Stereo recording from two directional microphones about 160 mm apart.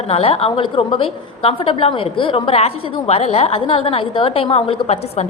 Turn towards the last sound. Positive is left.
turn(degrees=40)  # may be behind; listen again after turning